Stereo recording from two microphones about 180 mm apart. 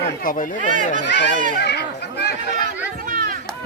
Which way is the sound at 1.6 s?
65° left (ahead or behind).